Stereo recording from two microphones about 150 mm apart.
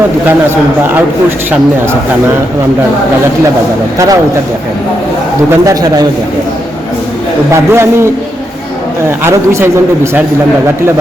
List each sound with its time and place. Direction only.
3.9 s a man's voice: 20° right (ahead or behind)
5.5 s a man's voice: 20° right (ahead or behind)
7.5 s a man's voice: 15° right (ahead or behind)
9.0 s a man's voice: 15° right (ahead or behind)